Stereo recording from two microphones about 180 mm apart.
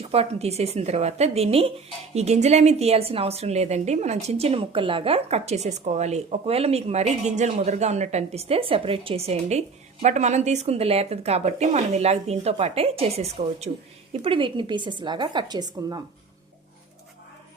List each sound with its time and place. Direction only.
0.0 s a woman's voice: 35° right (ahead or behind)